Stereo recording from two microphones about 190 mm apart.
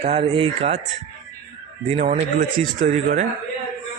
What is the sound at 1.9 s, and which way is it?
Speech, 35° right (ahead or behind).